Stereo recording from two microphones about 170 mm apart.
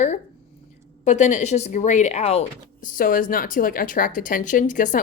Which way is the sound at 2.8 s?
55° left (ahead or behind).